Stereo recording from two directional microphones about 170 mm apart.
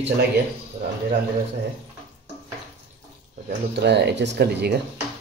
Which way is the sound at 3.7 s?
90° right.